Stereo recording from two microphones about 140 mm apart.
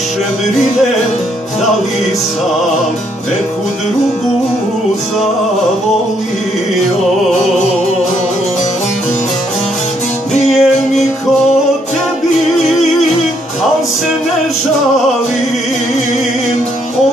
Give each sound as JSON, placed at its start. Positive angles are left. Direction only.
{"t": 10.3, "sound": "music", "side_deg": 50}